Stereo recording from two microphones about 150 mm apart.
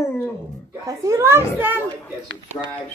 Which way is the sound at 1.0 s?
20° right (ahead or behind).